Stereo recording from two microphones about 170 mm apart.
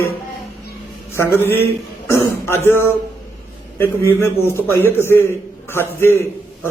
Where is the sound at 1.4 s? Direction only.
15° left (ahead or behind).